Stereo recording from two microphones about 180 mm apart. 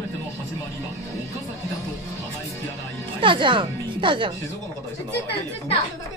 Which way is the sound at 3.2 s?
25° right (ahead or behind).